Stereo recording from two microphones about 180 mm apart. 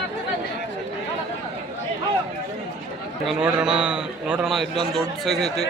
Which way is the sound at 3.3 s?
5° right (ahead or behind).